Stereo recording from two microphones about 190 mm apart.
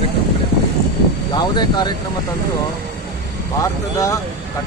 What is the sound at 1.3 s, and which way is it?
Speech, 25° left (ahead or behind).